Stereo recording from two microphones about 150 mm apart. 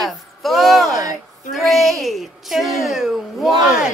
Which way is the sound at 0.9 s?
25° right (ahead or behind).